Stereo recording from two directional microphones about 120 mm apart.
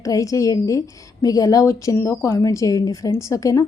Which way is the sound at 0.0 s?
25° left (ahead or behind).